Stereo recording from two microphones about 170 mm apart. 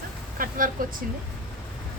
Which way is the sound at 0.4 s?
55° right (ahead or behind).